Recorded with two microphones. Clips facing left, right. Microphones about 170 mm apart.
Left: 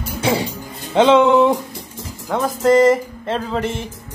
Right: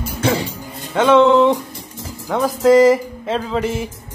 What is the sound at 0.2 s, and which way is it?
Music, 15° left (ahead or behind).